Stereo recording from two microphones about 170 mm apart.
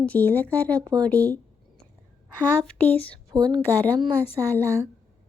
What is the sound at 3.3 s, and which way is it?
Speech, 25° right (ahead or behind).